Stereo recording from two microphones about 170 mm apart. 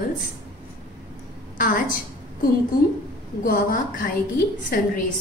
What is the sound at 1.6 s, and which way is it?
Speech, 55° left (ahead or behind).